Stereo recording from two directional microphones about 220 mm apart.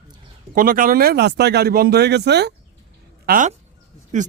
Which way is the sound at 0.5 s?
40° right (ahead or behind).